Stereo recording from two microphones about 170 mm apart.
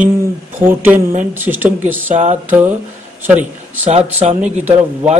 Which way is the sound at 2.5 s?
10° right (ahead or behind).